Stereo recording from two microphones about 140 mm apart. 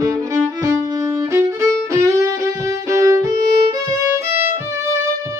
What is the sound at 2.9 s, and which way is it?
Violin, 25° right (ahead or behind).